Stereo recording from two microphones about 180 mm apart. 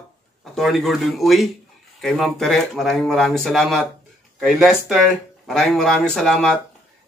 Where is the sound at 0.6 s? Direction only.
Centre (ahead or behind).